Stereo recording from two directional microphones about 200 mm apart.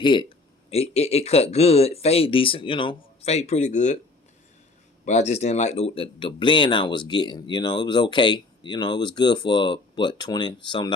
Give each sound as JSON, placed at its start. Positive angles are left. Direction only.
{"t": 0.0, "sound": "speech", "side_deg": 25}
{"t": 5.0, "sound": "speech", "side_deg": 35}